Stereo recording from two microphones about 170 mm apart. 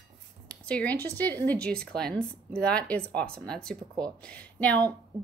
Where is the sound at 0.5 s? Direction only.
5° left (ahead or behind).